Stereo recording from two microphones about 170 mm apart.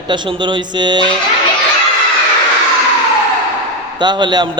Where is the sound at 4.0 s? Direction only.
25° right (ahead or behind).